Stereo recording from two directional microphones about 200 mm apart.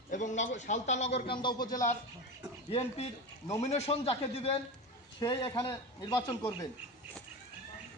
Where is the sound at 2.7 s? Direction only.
30° left (ahead or behind).